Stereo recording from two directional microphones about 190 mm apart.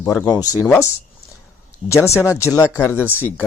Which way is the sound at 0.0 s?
10° left (ahead or behind).